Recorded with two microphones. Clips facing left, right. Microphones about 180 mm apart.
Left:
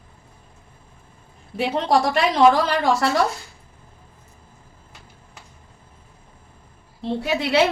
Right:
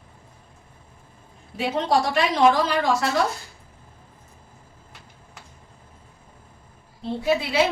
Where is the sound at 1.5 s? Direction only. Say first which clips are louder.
Left 2 dB; 60° left (ahead or behind).